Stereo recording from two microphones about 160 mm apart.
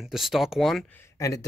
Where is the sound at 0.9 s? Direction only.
20° left (ahead or behind).